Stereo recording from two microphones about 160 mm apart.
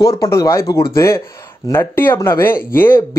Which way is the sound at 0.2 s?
20° left (ahead or behind).